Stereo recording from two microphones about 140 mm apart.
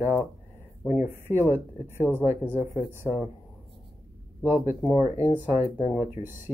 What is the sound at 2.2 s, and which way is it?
Speech, 15° right (ahead or behind).